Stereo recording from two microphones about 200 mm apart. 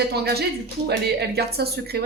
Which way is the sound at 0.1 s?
55° right (ahead or behind).